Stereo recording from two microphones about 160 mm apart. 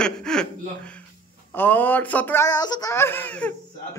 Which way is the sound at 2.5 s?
25° left (ahead or behind).